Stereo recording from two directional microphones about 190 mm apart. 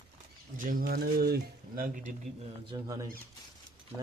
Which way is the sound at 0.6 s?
45° right (ahead or behind).